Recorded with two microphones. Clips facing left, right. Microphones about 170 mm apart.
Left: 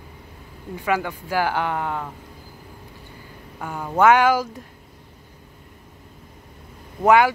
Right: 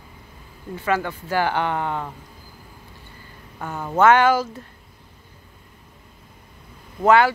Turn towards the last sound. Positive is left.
turn(degrees=15)  # may be behind; listen again after turning